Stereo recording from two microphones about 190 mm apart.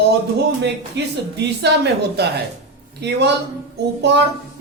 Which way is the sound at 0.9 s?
65° right (ahead or behind).